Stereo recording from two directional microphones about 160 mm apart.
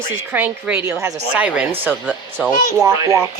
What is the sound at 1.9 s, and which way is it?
Speech, 5° left (ahead or behind).